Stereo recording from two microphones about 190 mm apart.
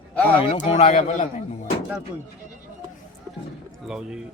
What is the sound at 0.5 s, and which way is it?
Speech, 35° left (ahead or behind).